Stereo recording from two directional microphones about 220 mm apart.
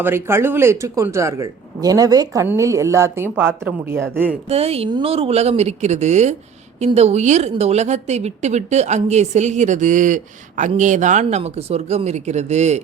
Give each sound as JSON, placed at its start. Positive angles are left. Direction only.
{"t": 0.0, "sound": "speech", "side_deg": -10}
{"t": 4.4, "sound": "a woman's voice", "side_deg": -30}